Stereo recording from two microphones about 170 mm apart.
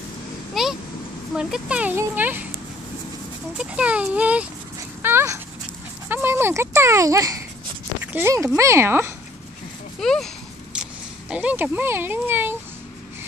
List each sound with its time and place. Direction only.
0.6 s a sound: centre (ahead or behind)
1.3 s speech: 5° right (ahead or behind)
3.7 s speech: 5° right (ahead or behind)
9.9 s speech: 5° left (ahead or behind)